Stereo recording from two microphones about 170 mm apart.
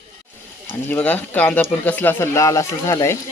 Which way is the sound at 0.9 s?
10° left (ahead or behind).